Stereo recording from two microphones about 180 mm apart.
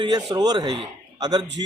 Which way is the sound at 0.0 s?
25° right (ahead or behind).